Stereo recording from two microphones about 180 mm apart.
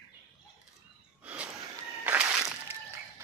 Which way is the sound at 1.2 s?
5° right (ahead or behind).